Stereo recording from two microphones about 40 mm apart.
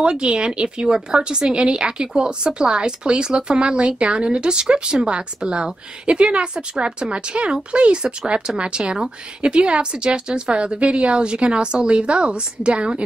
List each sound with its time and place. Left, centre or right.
0.0 s a woman's voice: right